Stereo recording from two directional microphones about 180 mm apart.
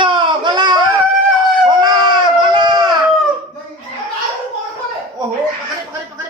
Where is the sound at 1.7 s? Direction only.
25° right (ahead or behind).